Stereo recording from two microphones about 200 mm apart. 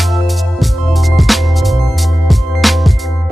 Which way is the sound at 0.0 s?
Centre (ahead or behind).